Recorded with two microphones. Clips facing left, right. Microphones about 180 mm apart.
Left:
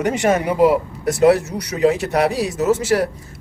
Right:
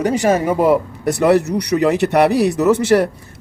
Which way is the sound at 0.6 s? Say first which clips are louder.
Even; 60° right (ahead or behind).